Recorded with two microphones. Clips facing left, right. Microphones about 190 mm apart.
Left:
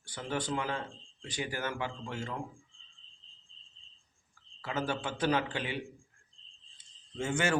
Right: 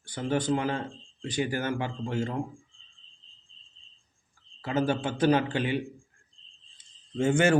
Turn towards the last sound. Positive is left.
turn(degrees=-55)  # may be behind; listen again after turning